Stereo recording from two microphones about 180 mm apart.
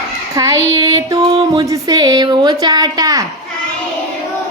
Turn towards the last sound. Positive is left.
turn(degrees=-20)  # may be behind; listen again after turning